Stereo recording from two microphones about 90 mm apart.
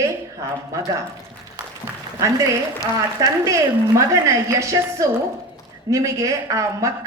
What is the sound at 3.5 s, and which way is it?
A woman's voice, 35° right (ahead or behind).